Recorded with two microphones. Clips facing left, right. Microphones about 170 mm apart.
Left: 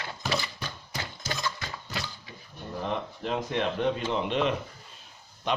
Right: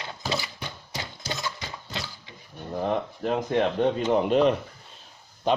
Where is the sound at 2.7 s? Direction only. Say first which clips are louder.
Right 5 dB; 45° right (ahead or behind).